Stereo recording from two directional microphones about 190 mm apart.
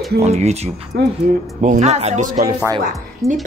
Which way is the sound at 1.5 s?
40° right (ahead or behind).